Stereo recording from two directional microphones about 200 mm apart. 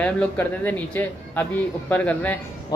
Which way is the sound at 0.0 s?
10° left (ahead or behind).